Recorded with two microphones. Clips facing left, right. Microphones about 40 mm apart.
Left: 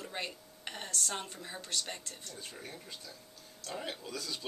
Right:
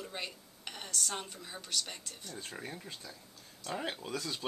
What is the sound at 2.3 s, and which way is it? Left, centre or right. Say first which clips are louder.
Speech: right 4 dB; right.